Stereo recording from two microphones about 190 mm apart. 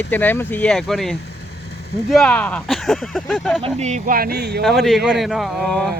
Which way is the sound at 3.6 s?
30° right (ahead or behind).